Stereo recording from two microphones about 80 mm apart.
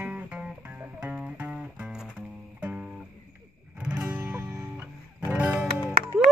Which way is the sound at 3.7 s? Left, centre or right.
Centre.